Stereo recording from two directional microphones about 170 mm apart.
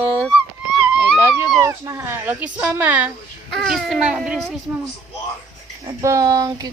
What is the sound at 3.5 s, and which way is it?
Speech, centre (ahead or behind).